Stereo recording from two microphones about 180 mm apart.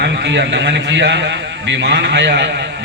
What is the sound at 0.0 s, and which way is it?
A man's voice, 75° right (ahead or behind).